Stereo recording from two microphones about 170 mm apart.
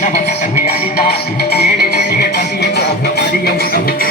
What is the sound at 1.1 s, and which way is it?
Music, 70° left (ahead or behind).